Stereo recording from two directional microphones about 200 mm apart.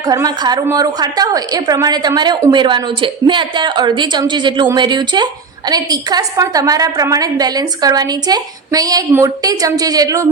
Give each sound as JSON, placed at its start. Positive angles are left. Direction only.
{"t": 0.1, "sound": "a woman's voice", "side_deg": -20}